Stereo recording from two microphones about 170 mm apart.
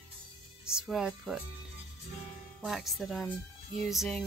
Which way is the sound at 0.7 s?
5° right (ahead or behind).